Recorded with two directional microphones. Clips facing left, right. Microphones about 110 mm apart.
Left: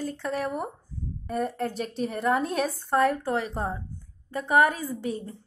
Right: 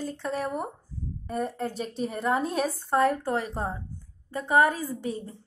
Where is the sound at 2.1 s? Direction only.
25° right (ahead or behind).